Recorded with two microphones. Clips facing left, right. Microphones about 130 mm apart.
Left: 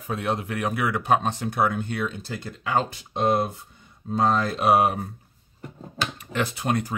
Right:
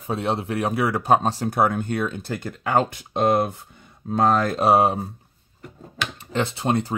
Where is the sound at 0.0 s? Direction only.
30° right (ahead or behind); by 4.6 s 50° right (ahead or behind).